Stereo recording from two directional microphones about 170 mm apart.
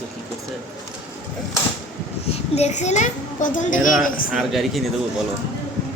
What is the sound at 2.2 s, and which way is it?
A child's voice, 40° left (ahead or behind).